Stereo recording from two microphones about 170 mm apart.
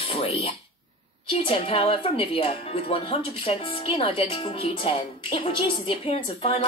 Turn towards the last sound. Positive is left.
turn(degrees=35)  # may be behind; listen again after turning